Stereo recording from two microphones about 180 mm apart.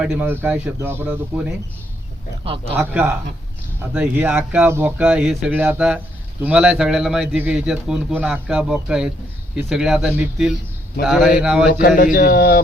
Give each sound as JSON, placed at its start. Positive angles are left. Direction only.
{"t": 0.0, "sound": "speech", "side_deg": -5}
{"t": 2.4, "sound": "speech", "side_deg": -30}
{"t": 2.7, "sound": "speech", "side_deg": -10}
{"t": 11.8, "sound": "speech", "side_deg": 50}